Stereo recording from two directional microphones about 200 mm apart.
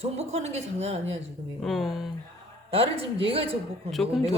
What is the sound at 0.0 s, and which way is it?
Speech, 35° right (ahead or behind).